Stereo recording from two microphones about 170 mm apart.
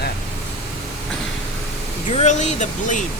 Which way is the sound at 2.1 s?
40° left (ahead or behind).